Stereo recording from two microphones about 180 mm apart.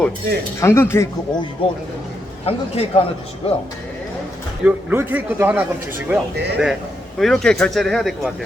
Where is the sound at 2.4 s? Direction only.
35° left (ahead or behind).